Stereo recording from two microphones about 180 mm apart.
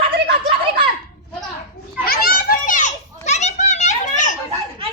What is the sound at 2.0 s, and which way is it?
Children playing, 55° left (ahead or behind).